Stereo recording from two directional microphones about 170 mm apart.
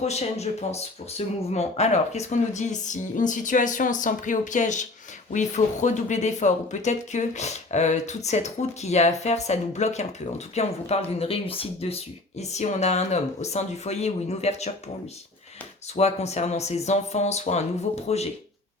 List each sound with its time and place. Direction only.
0.0 s speech: 40° left (ahead or behind)
16.0 s speech: 40° left (ahead or behind)